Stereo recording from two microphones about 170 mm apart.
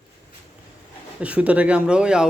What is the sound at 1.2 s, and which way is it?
A man's voice, 10° right (ahead or behind).